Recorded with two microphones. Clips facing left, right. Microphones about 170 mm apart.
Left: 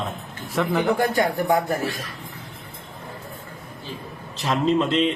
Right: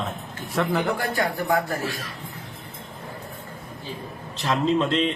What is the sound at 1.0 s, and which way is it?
Speech, 20° left (ahead or behind).